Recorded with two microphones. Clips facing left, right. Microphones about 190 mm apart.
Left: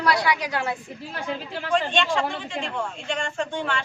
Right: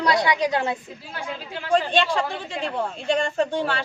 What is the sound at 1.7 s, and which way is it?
A woman's voice, 35° right (ahead or behind).